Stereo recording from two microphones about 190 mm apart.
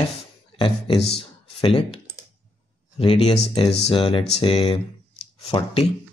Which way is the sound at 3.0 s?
30° left (ahead or behind).